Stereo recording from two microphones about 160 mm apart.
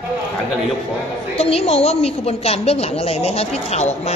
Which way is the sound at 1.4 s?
40° left (ahead or behind).